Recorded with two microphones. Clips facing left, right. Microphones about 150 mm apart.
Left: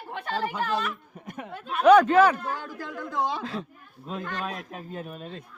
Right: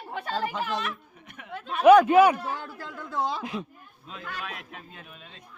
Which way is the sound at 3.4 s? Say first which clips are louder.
Even; 15° right (ahead or behind).